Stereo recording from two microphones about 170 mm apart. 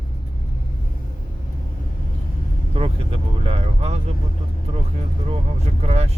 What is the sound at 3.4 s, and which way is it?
Speech, 35° right (ahead or behind).